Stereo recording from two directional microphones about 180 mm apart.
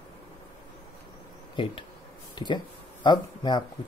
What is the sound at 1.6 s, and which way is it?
Speech, 25° left (ahead or behind).